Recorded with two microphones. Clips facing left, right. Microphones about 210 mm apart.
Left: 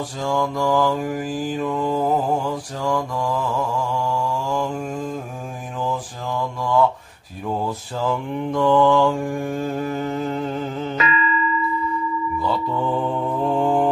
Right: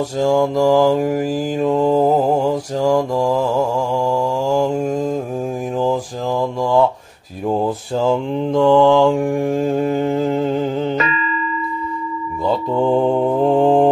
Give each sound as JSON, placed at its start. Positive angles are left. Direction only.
{"t": 0.2, "sound": "mantra", "side_deg": -25}
{"t": 7.4, "sound": "mantra", "side_deg": -30}
{"t": 12.7, "sound": "mantra", "side_deg": -30}